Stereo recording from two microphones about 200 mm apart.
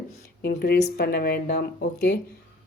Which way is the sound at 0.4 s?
50° left (ahead or behind).